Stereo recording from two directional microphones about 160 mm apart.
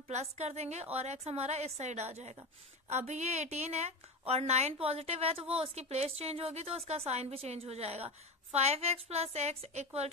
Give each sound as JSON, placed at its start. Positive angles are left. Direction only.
{"t": 0.1, "sound": "a woman's voice", "side_deg": -45}